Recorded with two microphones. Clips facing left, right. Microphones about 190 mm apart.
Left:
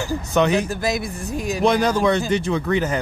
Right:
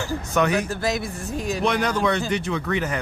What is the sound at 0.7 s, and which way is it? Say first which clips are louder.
Speech: left 2 dB; 10° left (ahead or behind).